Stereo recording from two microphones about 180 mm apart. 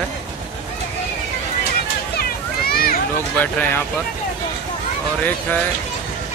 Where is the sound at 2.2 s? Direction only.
60° left (ahead or behind).